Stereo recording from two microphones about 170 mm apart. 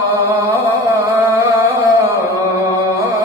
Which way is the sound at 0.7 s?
20° right (ahead or behind).